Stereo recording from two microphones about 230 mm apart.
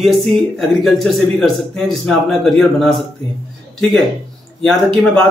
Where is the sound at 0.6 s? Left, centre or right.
Centre.